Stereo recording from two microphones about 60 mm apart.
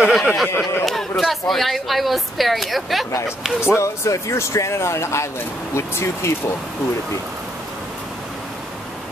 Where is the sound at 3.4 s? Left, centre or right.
Centre.